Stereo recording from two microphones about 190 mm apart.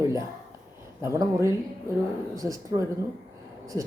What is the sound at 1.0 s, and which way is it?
Speech, 15° right (ahead or behind).